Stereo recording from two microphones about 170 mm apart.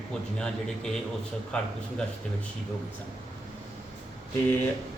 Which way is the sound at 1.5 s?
5° left (ahead or behind).